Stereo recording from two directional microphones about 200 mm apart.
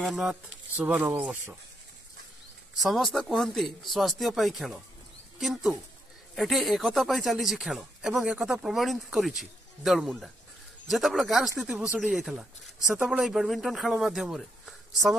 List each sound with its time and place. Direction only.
0.0 s speech: centre (ahead or behind)
2.8 s speech: centre (ahead or behind)